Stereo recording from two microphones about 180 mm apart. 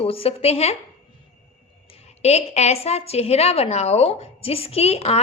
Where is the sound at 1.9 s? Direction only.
35° left (ahead or behind).